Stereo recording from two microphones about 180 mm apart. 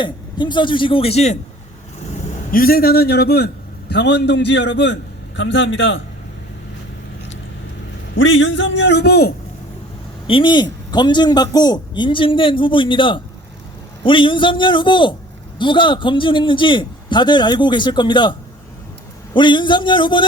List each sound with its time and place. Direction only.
0.0 s a man's voice: 25° left (ahead or behind)
2.1 s a man's voice: 45° left (ahead or behind); by 6.0 s 90° left
8.1 s a man's voice: 90° left; by 9.3 s 65° left (ahead or behind)
10.2 s a man's voice: 25° left (ahead or behind)